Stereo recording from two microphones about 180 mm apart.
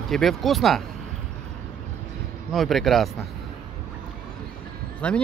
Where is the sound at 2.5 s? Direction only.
Centre (ahead or behind).